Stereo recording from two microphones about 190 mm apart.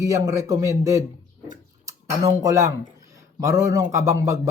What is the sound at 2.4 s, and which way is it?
Speech, 15° right (ahead or behind).